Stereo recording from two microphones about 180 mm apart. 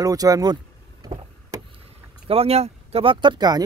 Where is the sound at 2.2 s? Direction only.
35° right (ahead or behind).